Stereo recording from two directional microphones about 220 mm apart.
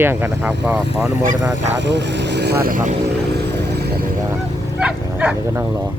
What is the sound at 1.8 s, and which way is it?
Speech, 50° right (ahead or behind).